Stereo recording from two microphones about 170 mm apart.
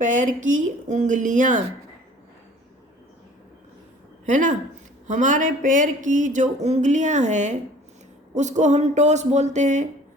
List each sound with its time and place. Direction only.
0.0 s speech: 50° right (ahead or behind)
4.3 s speech: 50° right (ahead or behind)